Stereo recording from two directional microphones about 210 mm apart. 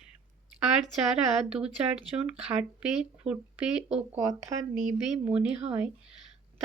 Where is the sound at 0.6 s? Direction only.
Centre (ahead or behind).